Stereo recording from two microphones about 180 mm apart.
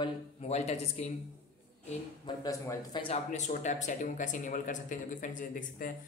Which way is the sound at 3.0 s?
40° left (ahead or behind).